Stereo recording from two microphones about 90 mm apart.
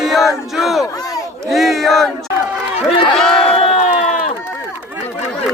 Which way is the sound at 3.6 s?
90° left.